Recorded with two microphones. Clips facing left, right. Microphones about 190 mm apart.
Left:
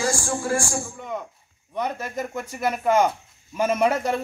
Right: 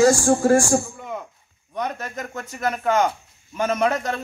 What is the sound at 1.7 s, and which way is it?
A man's voice, 5° left (ahead or behind).